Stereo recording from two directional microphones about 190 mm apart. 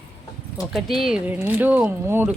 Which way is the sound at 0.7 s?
Centre (ahead or behind).